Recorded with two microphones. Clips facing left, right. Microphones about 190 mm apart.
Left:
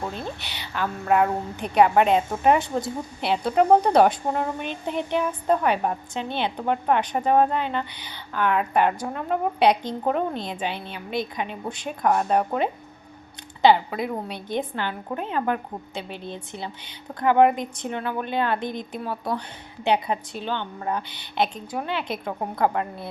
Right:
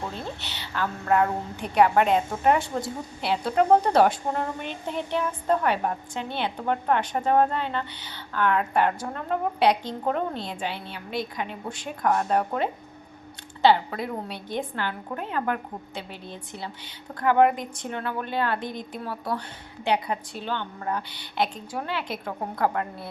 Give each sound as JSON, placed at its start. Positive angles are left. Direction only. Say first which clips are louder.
{"t": 0.3, "sound": "a woman's voice", "louder": "left 1 dB", "side_deg": 15}